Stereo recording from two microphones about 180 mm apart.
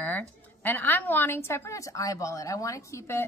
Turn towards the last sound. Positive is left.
turn(degrees=15)  # may be behind; listen again after turning